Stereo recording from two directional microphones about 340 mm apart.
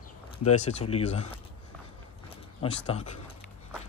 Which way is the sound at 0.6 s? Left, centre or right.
Centre.